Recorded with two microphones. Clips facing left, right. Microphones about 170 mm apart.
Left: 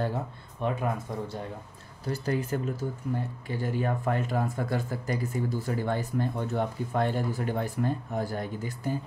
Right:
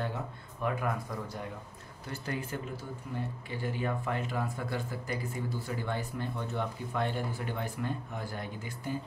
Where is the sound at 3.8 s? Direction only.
45° left (ahead or behind).